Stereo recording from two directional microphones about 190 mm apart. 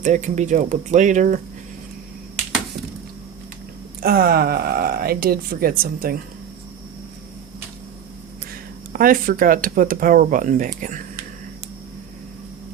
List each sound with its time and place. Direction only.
0.0 s speech: 40° right (ahead or behind)
4.0 s speech: 55° right (ahead or behind)
8.9 s speech: 50° right (ahead or behind)